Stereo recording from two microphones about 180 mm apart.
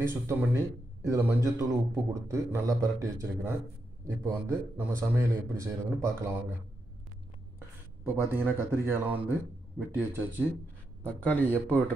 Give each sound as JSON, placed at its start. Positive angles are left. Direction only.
{"t": 0.0, "sound": "a man's voice", "side_deg": -10}
{"t": 7.5, "sound": "a man's voice", "side_deg": -10}